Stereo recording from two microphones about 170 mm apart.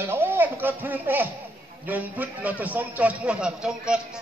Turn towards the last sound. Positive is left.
turn(degrees=-5)  # may be behind; listen again after turning